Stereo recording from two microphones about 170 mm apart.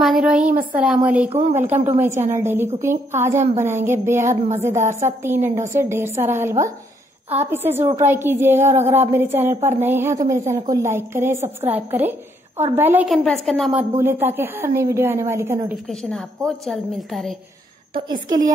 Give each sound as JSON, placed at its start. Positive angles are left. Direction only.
{"t": 0.0, "sound": "a woman's voice", "side_deg": -5}
{"t": 4.2, "sound": "a woman's voice", "side_deg": -45}
{"t": 5.2, "sound": "a woman's voice", "side_deg": -15}
{"t": 13.1, "sound": "a woman's voice", "side_deg": 0}
{"t": 13.9, "sound": "a woman's voice", "side_deg": -15}
{"t": 15.9, "sound": "a woman's voice", "side_deg": 5}
{"t": 18.0, "sound": "a woman's voice", "side_deg": -25}